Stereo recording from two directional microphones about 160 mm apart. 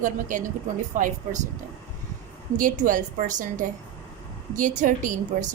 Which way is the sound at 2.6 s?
55° right (ahead or behind).